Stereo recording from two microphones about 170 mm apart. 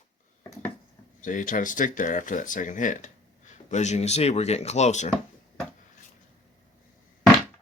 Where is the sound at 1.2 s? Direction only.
50° left (ahead or behind).